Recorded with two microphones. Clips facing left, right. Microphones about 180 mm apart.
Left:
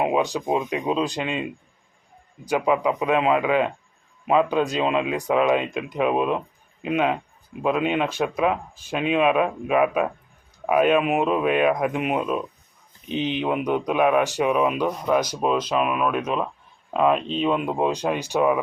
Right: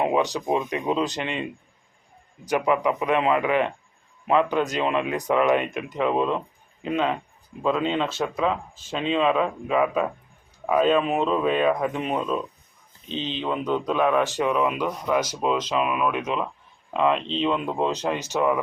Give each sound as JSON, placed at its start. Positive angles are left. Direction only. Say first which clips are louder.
{"t": 0.0, "sound": "a sound", "louder": "even", "side_deg": 15}
{"t": 0.3, "sound": "speech", "louder": "left 1 dB", "side_deg": 15}
{"t": 2.5, "sound": "speech", "louder": "left 1 dB", "side_deg": 15}